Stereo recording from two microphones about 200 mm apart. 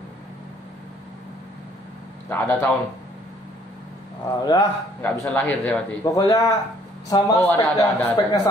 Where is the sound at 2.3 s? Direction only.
15° left (ahead or behind).